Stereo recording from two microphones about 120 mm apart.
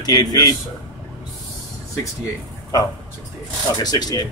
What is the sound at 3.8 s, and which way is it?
Speech, 35° left (ahead or behind).